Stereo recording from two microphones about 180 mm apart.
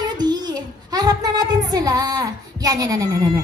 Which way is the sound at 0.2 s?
25° right (ahead or behind).